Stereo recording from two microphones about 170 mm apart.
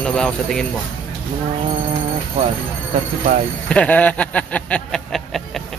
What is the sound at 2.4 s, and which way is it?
Speech, 40° right (ahead or behind).